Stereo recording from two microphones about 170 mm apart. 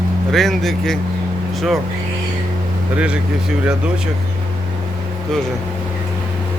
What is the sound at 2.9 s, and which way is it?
Speech, 5° right (ahead or behind).